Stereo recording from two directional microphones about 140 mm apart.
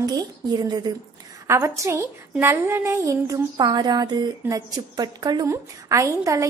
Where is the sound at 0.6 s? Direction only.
30° right (ahead or behind).